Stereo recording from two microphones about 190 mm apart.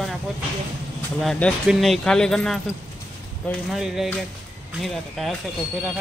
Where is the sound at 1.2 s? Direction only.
5° left (ahead or behind).